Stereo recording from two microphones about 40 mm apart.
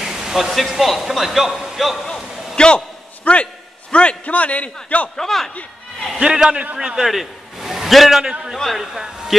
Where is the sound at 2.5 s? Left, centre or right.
Left.